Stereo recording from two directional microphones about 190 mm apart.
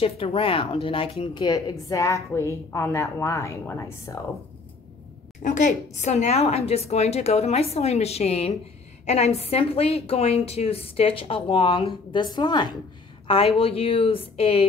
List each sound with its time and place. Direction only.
0.0 s a woman's voice: 30° left (ahead or behind)
5.4 s a woman's voice: 40° left (ahead or behind)